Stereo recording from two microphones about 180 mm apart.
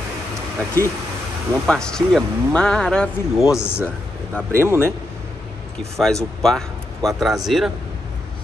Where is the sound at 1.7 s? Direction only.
5° left (ahead or behind).